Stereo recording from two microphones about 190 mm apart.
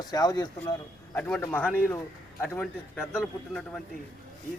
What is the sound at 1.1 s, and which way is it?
Speech, 10° left (ahead or behind).